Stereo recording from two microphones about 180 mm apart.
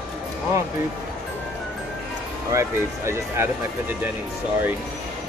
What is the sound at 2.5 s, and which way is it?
Speech, 15° right (ahead or behind).